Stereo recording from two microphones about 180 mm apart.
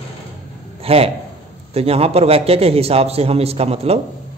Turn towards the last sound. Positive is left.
turn(degrees=-35)  # may be behind; listen again after turning